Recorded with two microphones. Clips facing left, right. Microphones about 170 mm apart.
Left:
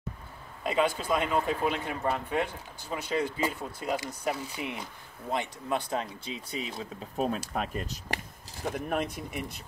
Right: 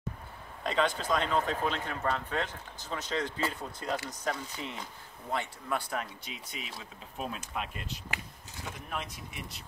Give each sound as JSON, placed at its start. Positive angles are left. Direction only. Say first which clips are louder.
{"t": 0.7, "sound": "a man's voice", "louder": "left 2 dB", "side_deg": 10}
{"t": 8.7, "sound": "speech", "louder": "left 9 dB", "side_deg": 55}